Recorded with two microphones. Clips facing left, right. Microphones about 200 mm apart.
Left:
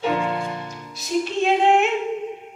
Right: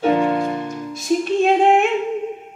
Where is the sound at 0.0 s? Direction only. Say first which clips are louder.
Right 6 dB; 45° right (ahead or behind).